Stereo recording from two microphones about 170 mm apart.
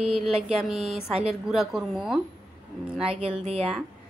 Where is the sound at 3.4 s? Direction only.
35° right (ahead or behind).